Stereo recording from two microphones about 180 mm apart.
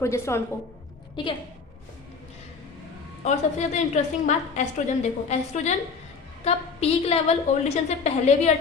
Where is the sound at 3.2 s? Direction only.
40° left (ahead or behind).